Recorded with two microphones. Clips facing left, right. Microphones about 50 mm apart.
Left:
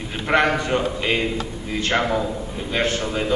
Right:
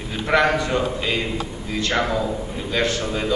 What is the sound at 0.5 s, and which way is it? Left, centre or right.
A man's voice, left.